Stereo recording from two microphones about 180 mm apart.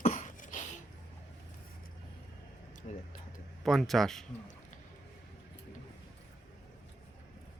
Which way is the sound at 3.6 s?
Centre (ahead or behind).